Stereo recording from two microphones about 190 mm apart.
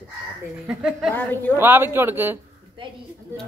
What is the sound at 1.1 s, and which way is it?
Speech, 10° left (ahead or behind).